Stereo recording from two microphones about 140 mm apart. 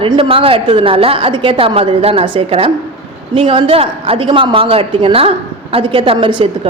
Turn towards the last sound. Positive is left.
turn(degrees=-35)  # may be behind; listen again after turning